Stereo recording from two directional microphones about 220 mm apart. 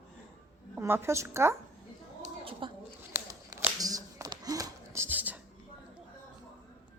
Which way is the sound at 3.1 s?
10° right (ahead or behind).